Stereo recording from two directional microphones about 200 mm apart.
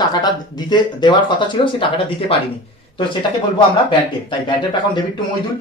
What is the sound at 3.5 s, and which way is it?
Speech, 25° left (ahead or behind).